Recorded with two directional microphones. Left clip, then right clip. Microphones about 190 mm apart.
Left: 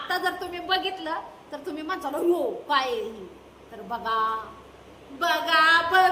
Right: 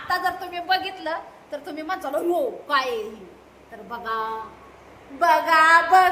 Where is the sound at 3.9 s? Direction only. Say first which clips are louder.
Left 2 dB; 20° left (ahead or behind).